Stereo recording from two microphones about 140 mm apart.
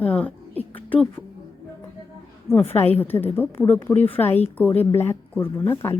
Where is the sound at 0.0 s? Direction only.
10° left (ahead or behind).